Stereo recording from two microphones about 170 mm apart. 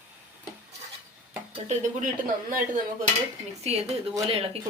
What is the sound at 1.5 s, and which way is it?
Speech, 45° right (ahead or behind).